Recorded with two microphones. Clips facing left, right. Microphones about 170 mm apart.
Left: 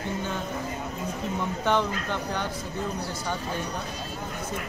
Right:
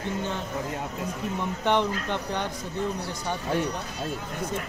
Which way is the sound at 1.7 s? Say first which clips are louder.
Right 1 dB; 20° right (ahead or behind).